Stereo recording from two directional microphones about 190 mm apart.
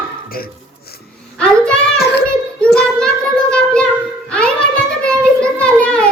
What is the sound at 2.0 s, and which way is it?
Child singing, 60° left (ahead or behind).